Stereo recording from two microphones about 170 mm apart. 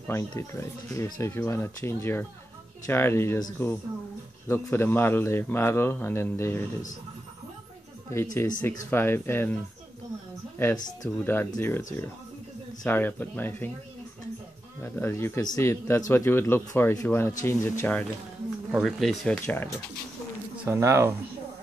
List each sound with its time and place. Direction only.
0.1 s a man's voice: 15° left (ahead or behind)
8.1 s a man's voice: 15° left (ahead or behind)
10.6 s a man's voice: 15° left (ahead or behind)
14.8 s a man's voice: 15° left (ahead or behind)
18.7 s speech: centre (ahead or behind)
20.6 s speech: 15° right (ahead or behind)